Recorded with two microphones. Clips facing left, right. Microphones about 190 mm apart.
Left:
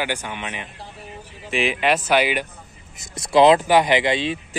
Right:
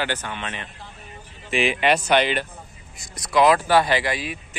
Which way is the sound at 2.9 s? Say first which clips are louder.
Left 4 dB; 25° left (ahead or behind).